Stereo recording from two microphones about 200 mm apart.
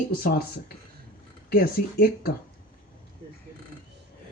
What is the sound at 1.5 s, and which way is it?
Speech, 50° left (ahead or behind).